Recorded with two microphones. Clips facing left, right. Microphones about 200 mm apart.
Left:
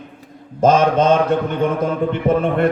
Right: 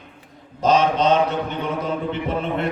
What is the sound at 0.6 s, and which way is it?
Speech, 50° left (ahead or behind).